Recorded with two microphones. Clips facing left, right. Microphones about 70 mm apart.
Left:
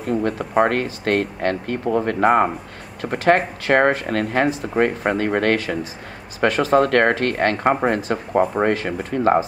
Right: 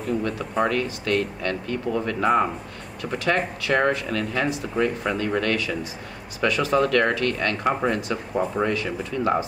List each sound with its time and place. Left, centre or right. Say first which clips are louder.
0.0 s speech: left 4 dB; left